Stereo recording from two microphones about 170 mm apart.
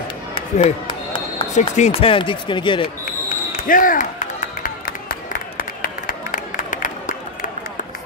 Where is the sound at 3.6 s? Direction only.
55° left (ahead or behind).